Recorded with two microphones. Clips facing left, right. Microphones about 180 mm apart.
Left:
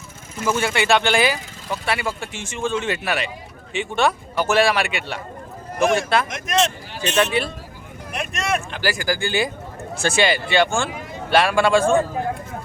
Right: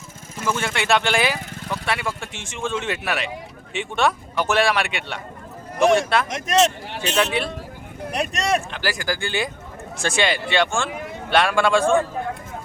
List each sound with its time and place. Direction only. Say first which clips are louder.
0.4 s speech: left 3 dB; 5° left (ahead or behind)
6.3 s speech: right 2 dB; 35° right (ahead or behind)
7.0 s speech: left 2 dB; centre (ahead or behind)
8.1 s speech: right 2 dB; 35° right (ahead or behind)
8.7 s speech: left 2 dB; centre (ahead or behind)